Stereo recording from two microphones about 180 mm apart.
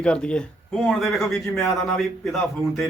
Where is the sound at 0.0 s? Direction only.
5° left (ahead or behind).